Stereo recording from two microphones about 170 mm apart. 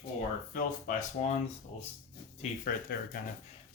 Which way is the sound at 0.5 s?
50° left (ahead or behind).